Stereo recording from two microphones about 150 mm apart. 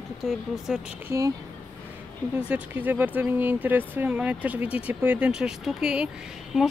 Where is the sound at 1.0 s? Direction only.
20° right (ahead or behind).